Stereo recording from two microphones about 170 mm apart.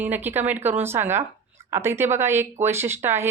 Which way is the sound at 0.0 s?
10° right (ahead or behind).